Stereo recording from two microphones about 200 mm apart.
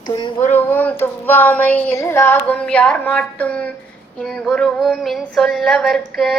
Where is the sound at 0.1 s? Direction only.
20° left (ahead or behind).